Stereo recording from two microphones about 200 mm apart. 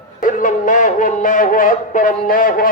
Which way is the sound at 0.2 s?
40° left (ahead or behind).